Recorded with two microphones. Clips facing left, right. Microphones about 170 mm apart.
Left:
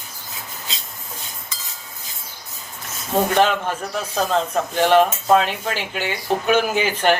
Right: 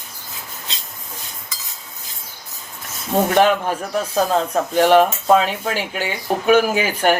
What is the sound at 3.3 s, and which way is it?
Speech, 10° right (ahead or behind).